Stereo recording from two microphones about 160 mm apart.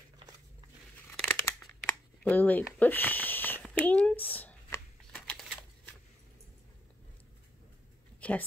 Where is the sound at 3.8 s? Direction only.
10° left (ahead or behind).